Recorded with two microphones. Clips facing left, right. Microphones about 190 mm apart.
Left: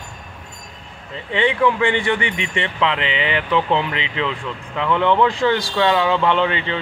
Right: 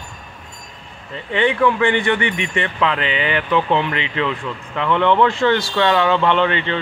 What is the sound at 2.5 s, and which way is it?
Speech, 25° left (ahead or behind).